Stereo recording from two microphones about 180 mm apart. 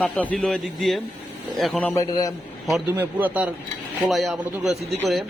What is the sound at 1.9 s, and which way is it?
Speech, 20° left (ahead or behind).